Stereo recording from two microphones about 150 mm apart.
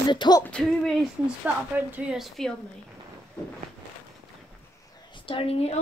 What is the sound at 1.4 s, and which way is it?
A woman's voice, 10° right (ahead or behind).